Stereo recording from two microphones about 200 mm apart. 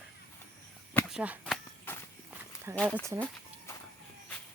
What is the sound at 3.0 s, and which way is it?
Speech, 15° right (ahead or behind).